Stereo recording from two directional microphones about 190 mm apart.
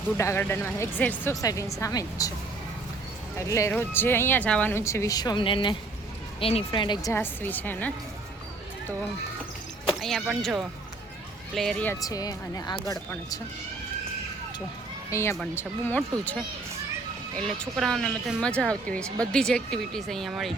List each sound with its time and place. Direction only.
0.2 s speech: 15° left (ahead or behind)
3.3 s speech: 15° left (ahead or behind)
9.8 s speech: centre (ahead or behind)
12.0 s speech: 20° left (ahead or behind)
15.1 s speech: 15° left (ahead or behind)